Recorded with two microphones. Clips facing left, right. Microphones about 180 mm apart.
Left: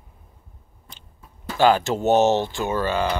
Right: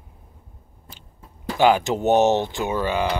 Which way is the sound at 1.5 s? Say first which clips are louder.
Even; 15° right (ahead or behind).